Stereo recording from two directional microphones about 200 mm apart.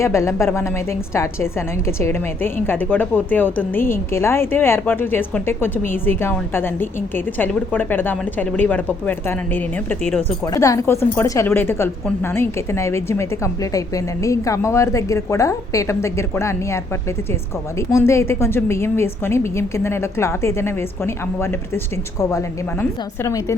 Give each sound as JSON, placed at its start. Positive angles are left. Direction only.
{"t": 0.0, "sound": "a woman's voice", "side_deg": 15}